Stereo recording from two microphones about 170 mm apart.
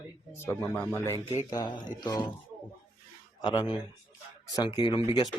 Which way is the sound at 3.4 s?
25° left (ahead or behind).